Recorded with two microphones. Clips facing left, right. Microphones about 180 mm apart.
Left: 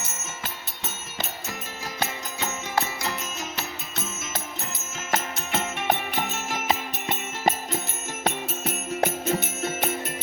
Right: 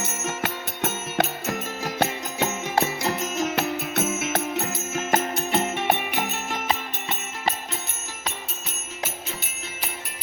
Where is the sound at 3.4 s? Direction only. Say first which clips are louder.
Right 10 dB; 60° right (ahead or behind).